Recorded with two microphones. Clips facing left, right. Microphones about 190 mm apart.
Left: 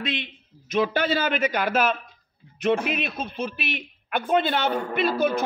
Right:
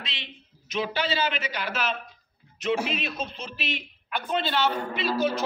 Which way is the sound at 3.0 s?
55° left (ahead or behind).